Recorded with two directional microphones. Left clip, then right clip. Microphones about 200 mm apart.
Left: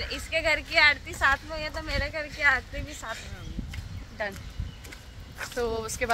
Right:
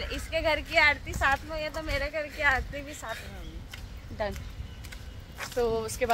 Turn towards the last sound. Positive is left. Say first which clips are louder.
# right 1 dB
turn(degrees=-15)  # may be behind; listen again after turning